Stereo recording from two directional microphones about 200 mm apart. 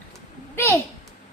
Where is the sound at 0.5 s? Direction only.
10° left (ahead or behind).